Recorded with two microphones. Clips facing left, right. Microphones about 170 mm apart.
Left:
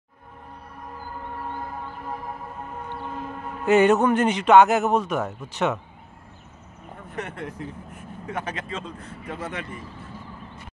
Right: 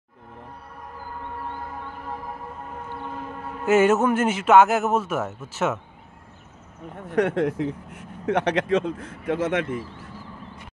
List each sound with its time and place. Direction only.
3.6 s a man's voice: 5° right (ahead or behind)
7.1 s speech: 90° right